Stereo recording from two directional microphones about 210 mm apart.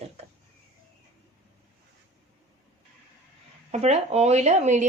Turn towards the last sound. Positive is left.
turn(degrees=-35)  # may be behind; listen again after turning